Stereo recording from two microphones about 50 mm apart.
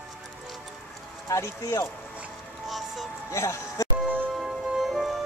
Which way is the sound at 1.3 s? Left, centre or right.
Left.